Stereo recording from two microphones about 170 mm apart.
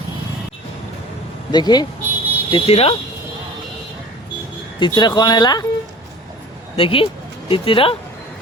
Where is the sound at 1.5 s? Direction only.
25° left (ahead or behind).